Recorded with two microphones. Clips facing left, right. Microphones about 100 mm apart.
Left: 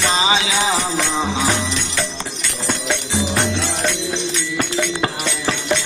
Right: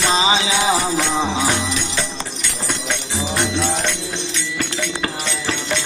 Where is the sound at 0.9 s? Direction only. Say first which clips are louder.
Right 1 dB; centre (ahead or behind).